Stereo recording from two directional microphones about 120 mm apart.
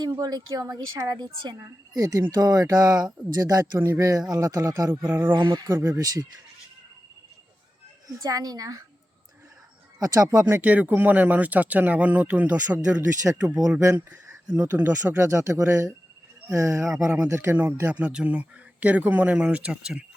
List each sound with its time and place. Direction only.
0.0 s a woman's voice: 35° right (ahead or behind)
5.0 s speech: 15° right (ahead or behind)
5.3 s a woman's voice: 40° right (ahead or behind)
5.7 s speech: 20° right (ahead or behind)
8.2 s a woman's voice: 30° right (ahead or behind)
10.0 s speech: 30° right (ahead or behind)
10.5 s speech: 10° right (ahead or behind)
15.2 s speech: 25° right (ahead or behind)
16.8 s speech: 5° right (ahead or behind)
17.2 s speech: 25° right (ahead or behind); by 20.1 s 5° right (ahead or behind)